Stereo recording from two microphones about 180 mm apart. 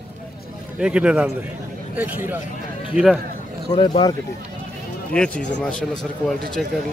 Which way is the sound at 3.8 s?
25° left (ahead or behind).